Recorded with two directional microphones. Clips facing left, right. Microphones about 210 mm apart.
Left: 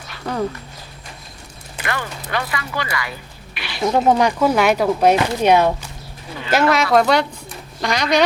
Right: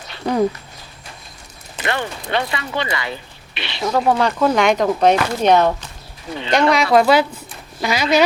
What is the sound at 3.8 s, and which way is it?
Speech, 20° left (ahead or behind).